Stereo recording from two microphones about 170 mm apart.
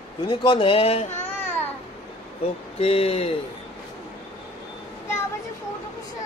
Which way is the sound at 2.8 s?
35° left (ahead or behind).